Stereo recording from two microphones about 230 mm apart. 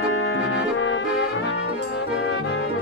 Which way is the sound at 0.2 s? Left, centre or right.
Left.